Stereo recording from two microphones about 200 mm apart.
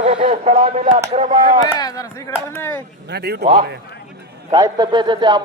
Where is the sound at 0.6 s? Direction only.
30° right (ahead or behind).